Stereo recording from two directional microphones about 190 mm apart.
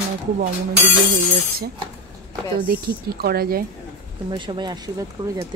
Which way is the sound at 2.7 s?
55° right (ahead or behind).